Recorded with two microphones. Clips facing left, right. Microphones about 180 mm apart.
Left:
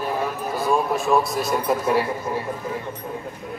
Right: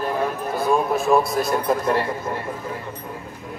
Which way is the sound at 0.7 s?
Centre (ahead or behind).